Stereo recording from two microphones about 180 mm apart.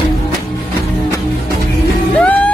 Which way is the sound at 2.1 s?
5° left (ahead or behind).